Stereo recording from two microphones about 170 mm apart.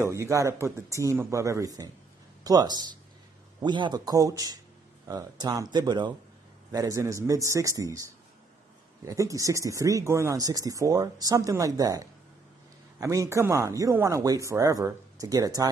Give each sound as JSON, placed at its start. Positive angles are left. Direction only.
{"t": 0.0, "sound": "speech", "side_deg": -15}
{"t": 9.0, "sound": "speech", "side_deg": -20}